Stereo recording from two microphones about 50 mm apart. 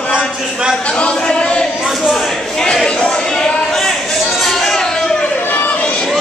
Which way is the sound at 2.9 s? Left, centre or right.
Centre.